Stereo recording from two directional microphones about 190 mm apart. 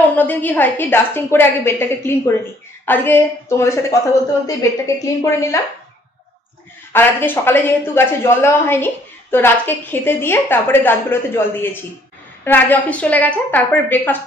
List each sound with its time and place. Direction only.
0.1 s speech: 10° left (ahead or behind)
6.9 s speech: 10° left (ahead or behind)